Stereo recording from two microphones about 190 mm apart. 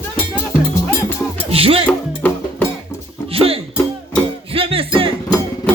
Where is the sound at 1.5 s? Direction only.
30° right (ahead or behind).